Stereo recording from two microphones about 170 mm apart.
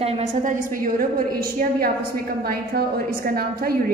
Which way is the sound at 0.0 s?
50° right (ahead or behind).